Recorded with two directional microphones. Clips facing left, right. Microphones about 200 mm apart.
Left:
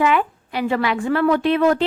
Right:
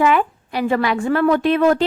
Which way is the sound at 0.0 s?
45° right (ahead or behind).